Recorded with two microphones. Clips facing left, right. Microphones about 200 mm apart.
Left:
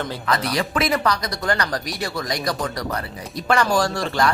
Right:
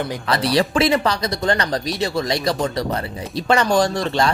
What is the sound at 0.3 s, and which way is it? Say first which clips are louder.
Speech: right 5 dB; 30° right (ahead or behind).